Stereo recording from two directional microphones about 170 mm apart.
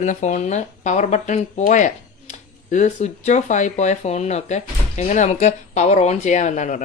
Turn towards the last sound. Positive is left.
turn(degrees=45)  # may be behind; listen again after turning